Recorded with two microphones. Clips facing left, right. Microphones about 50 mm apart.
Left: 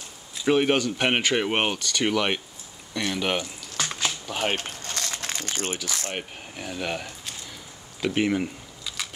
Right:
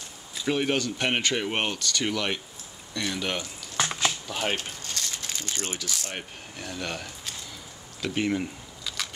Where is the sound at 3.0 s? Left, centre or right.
Centre.